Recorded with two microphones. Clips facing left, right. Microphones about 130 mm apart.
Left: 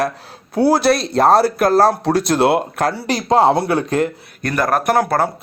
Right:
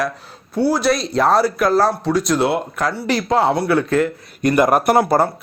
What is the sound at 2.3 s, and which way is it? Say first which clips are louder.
Speech: left 3 dB; 70° left (ahead or behind).